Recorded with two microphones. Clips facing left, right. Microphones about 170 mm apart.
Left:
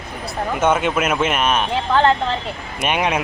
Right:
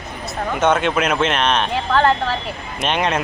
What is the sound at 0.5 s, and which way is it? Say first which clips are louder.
Speech: right 1 dB; 10° left (ahead or behind).